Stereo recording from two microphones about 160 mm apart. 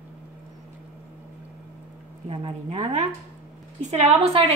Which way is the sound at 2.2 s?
40° right (ahead or behind).